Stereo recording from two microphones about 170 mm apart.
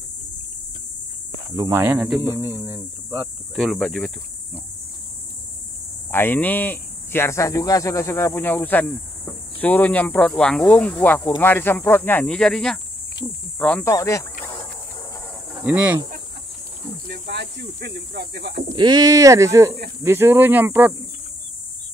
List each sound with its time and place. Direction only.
1.7 s speech: 10° right (ahead or behind)
3.5 s speech: 5° left (ahead or behind)
6.1 s speech: 10° left (ahead or behind)
15.6 s speech: 10° right (ahead or behind)
17.1 s speech: 75° right (ahead or behind)
18.8 s speech: 25° right (ahead or behind)